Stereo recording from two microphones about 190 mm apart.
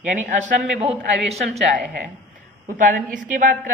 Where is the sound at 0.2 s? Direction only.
40° right (ahead or behind).